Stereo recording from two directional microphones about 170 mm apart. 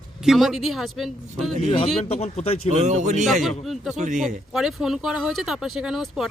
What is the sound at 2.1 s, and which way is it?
Speech, 35° left (ahead or behind).